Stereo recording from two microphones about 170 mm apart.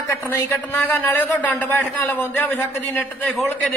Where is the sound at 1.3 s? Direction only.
10° left (ahead or behind).